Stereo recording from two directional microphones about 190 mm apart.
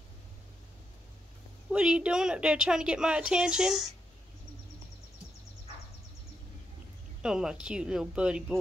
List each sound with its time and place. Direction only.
1.7 s a woman's voice: 5° right (ahead or behind)
7.2 s a woman's voice: 5° right (ahead or behind)